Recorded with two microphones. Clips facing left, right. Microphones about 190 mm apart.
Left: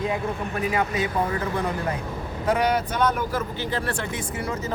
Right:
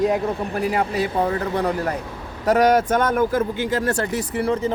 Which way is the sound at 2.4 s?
45° right (ahead or behind).